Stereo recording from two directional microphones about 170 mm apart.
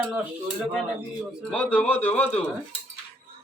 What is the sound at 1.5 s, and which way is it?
A man's voice, 10° left (ahead or behind).